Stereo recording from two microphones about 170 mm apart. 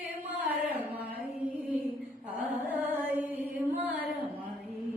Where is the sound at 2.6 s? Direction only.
10° right (ahead or behind).